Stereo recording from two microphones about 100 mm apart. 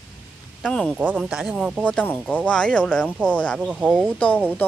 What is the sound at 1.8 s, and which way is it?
Speech, 15° left (ahead or behind).